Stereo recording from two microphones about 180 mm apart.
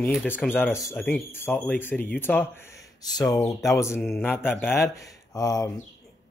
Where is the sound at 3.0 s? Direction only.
20° left (ahead or behind).